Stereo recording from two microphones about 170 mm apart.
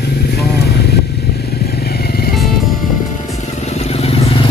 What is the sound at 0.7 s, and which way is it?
Motorcycle, 70° left (ahead or behind).